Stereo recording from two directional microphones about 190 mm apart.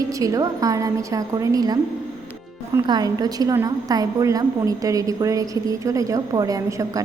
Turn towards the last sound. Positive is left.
turn(degrees=-20)  # may be behind; listen again after turning